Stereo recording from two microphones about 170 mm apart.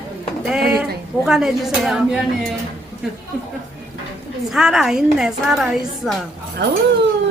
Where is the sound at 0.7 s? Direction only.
5° right (ahead or behind).